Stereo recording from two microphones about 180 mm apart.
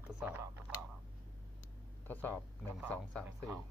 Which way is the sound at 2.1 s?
10° left (ahead or behind).